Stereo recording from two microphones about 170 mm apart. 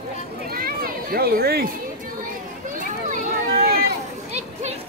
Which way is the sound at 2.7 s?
50° right (ahead or behind).